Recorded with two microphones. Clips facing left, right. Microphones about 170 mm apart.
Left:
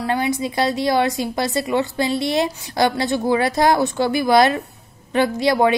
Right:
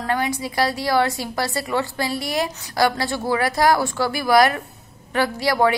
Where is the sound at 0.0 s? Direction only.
15° left (ahead or behind).